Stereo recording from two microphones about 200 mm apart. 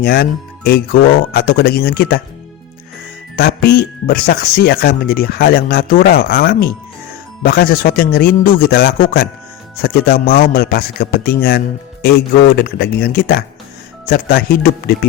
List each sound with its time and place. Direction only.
0.0 s speech: 50° left (ahead or behind)
3.3 s speech: 50° left (ahead or behind)